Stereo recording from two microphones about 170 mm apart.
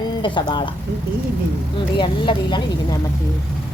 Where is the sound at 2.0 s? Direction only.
30° left (ahead or behind).